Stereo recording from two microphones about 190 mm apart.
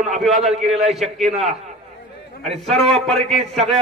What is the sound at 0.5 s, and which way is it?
Speech, 35° right (ahead or behind).